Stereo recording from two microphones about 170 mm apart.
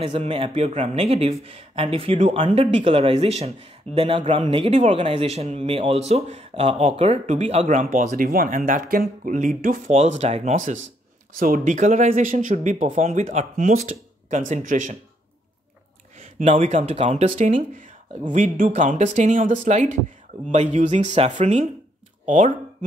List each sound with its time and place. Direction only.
0.0 s speech: 35° right (ahead or behind)
9.9 s speech: 40° right (ahead or behind)
16.2 s speech: 40° right (ahead or behind)